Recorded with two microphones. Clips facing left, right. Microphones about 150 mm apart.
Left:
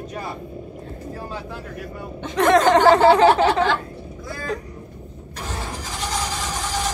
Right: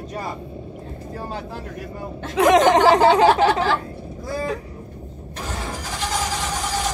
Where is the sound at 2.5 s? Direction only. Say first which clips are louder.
Left 1 dB; 20° right (ahead or behind).